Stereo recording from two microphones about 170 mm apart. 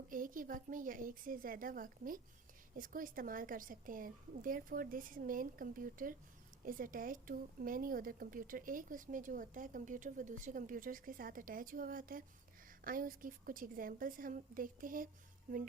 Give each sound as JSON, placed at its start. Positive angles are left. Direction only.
{"t": 0.1, "sound": "a woman's voice", "side_deg": -55}